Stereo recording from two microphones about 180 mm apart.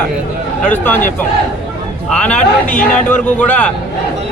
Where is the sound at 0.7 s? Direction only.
10° left (ahead or behind).